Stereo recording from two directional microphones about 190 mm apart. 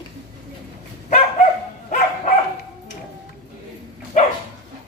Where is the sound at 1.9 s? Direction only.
40° left (ahead or behind).